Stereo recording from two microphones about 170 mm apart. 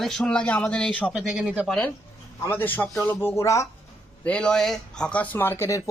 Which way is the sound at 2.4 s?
15° left (ahead or behind).